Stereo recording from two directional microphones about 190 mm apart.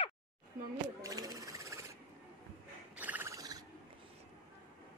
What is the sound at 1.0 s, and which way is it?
Owl, 20° right (ahead or behind).